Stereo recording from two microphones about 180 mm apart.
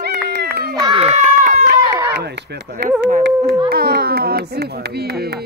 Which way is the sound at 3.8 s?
60° right (ahead or behind).